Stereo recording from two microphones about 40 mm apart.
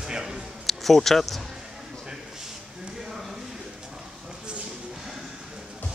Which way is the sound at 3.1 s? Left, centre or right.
Centre.